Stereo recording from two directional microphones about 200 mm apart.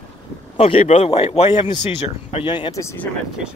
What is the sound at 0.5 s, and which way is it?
Speech, 30° left (ahead or behind).